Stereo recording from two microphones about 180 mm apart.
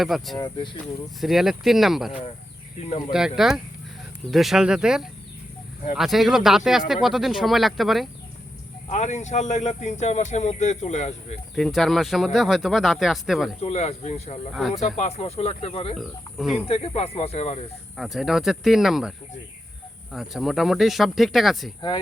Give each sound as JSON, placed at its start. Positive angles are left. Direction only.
{"t": 0.0, "sound": "speech", "side_deg": 0}
{"t": 0.3, "sound": "speech", "side_deg": 25}
{"t": 1.2, "sound": "speech", "side_deg": 0}
{"t": 8.9, "sound": "speech", "side_deg": 40}
{"t": 11.5, "sound": "speech", "side_deg": 0}
{"t": 13.6, "sound": "speech", "side_deg": 35}
{"t": 16.0, "sound": "speech", "side_deg": 0}
{"t": 16.6, "sound": "speech", "side_deg": 35}
{"t": 17.9, "sound": "speech", "side_deg": 0}
{"t": 20.1, "sound": "speech", "side_deg": 0}
{"t": 21.8, "sound": "speech", "side_deg": 25}